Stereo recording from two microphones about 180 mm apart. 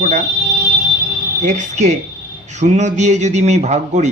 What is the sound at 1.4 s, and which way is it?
A man's voice, 40° right (ahead or behind).